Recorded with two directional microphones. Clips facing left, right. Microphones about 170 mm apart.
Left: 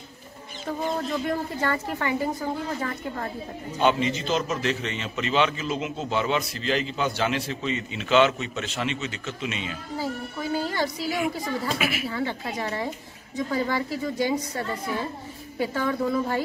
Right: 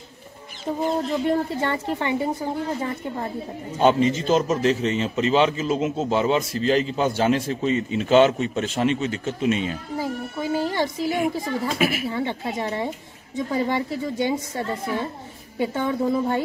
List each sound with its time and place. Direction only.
0.7 s speech: 25° right (ahead or behind)
3.7 s a man's voice: 40° right (ahead or behind)
9.9 s speech: 20° right (ahead or behind)
11.8 s speech: 45° right (ahead or behind)
12.1 s speech: 25° right (ahead or behind)